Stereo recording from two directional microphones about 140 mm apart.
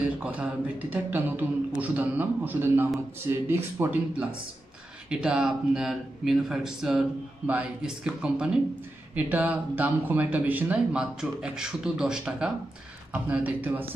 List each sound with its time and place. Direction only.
0.2 s speech: 10° right (ahead or behind)
5.1 s speech: 5° right (ahead or behind)